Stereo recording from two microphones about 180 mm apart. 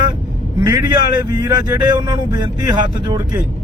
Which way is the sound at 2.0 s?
20° right (ahead or behind).